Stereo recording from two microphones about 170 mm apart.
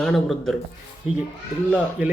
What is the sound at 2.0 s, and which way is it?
Speech, 10° right (ahead or behind).